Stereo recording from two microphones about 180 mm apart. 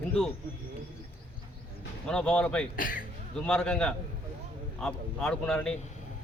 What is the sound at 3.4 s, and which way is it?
A man's voice, 5° left (ahead or behind).